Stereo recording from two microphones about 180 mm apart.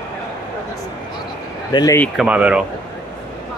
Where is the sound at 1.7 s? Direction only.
25° left (ahead or behind).